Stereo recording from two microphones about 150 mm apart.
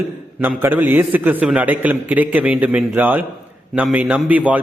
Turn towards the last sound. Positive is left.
turn(degrees=-10)  # may be behind; listen again after turning